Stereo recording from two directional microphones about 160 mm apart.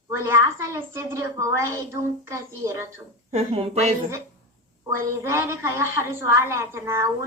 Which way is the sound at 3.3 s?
40° right (ahead or behind).